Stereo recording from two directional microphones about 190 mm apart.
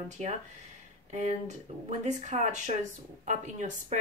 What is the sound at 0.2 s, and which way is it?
Speech, 40° right (ahead or behind).